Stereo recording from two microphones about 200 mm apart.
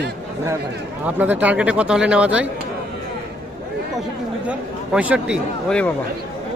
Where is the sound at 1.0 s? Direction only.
5° right (ahead or behind).